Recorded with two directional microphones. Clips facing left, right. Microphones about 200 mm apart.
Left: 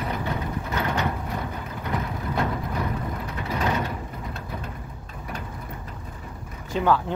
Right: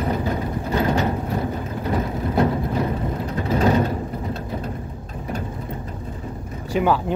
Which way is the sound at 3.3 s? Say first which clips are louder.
Right 8 dB; 35° right (ahead or behind).